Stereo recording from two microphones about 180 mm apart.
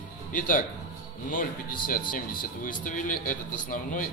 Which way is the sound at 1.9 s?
50° left (ahead or behind).